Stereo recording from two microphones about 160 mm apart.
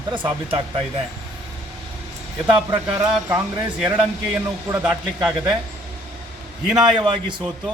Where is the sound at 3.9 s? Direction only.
10° right (ahead or behind).